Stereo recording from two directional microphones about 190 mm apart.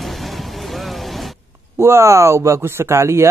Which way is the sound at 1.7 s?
15° right (ahead or behind).